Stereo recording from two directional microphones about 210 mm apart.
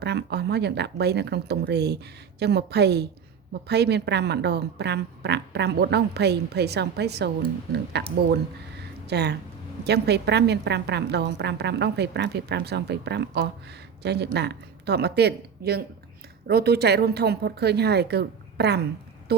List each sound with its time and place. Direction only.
0.0 s a woman's voice: 55° right (ahead or behind)